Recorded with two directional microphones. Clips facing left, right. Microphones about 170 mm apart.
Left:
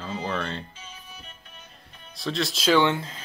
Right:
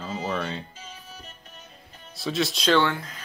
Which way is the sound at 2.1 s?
Centre (ahead or behind).